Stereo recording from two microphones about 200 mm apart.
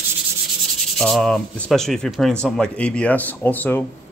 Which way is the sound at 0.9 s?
5° left (ahead or behind).